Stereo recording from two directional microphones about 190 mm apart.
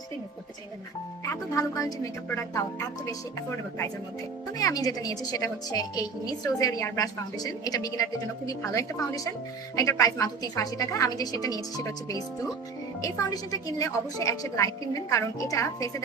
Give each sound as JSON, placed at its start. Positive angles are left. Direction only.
{"t": 1.2, "sound": "a woman's voice", "side_deg": 15}
{"t": 4.5, "sound": "a woman's voice", "side_deg": 20}